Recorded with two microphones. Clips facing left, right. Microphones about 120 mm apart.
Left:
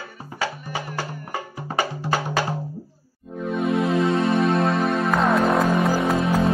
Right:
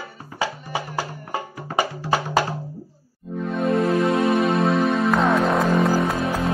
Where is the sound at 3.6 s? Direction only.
Centre (ahead or behind).